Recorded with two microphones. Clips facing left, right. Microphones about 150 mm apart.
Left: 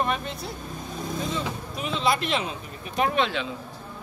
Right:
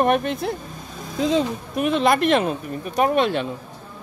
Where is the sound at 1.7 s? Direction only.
55° right (ahead or behind).